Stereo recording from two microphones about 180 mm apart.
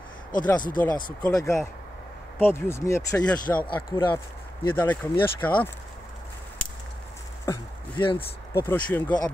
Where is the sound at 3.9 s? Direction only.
25° left (ahead or behind).